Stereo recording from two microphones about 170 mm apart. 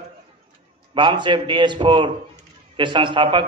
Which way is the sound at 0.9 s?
30° right (ahead or behind).